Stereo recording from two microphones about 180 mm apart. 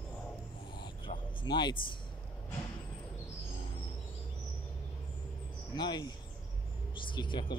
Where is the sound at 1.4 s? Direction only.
25° left (ahead or behind).